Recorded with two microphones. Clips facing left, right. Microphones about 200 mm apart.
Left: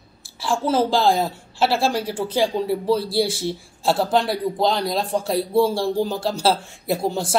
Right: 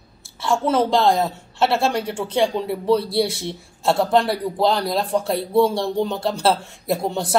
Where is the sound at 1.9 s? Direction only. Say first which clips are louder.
Right 1 dB; 5° left (ahead or behind).